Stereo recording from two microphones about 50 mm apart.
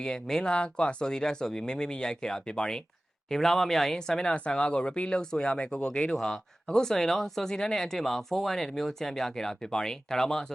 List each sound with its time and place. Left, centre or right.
0.0 s speech: centre
6.1 s speech: centre